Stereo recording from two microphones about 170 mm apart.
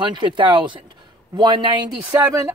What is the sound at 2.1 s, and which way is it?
Speech, 15° right (ahead or behind).